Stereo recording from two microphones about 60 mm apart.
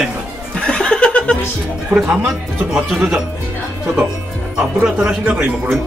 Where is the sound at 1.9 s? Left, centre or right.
Right.